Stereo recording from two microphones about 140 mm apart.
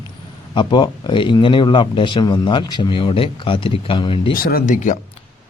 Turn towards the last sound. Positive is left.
turn(degrees=65)  # may be behind; listen again after turning